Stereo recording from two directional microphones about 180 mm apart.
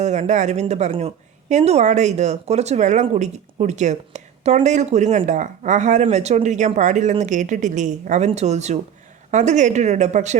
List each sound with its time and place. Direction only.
0.0 s speech: 40° right (ahead or behind)